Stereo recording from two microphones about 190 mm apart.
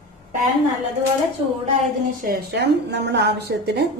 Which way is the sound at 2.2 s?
60° right (ahead or behind).